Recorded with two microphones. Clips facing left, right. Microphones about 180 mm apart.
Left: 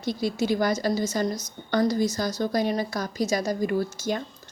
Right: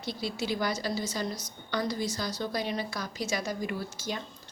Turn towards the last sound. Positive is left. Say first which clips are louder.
# left 9 dB
turn(degrees=50)  # may be behind; listen again after turning